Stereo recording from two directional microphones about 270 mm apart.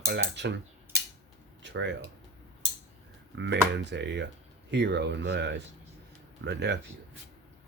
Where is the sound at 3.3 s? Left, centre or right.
Right.